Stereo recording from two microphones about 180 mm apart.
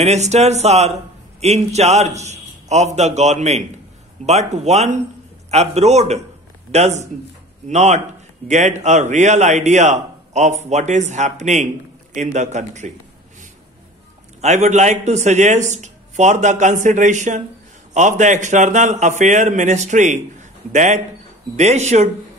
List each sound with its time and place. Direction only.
0.0 s a man's voice: 40° right (ahead or behind)
14.4 s a man's voice: 40° right (ahead or behind)